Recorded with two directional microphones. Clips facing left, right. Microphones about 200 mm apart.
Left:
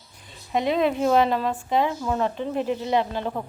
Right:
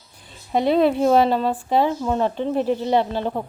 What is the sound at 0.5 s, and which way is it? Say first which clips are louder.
Speech: right 5 dB; 35° right (ahead or behind).